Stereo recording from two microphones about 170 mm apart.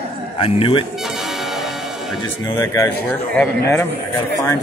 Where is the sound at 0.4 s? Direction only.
30° left (ahead or behind).